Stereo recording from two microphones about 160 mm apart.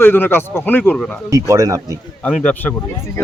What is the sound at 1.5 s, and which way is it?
Speech, 20° right (ahead or behind).